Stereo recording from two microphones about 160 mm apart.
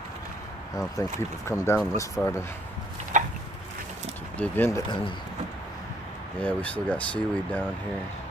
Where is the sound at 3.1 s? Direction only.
50° right (ahead or behind).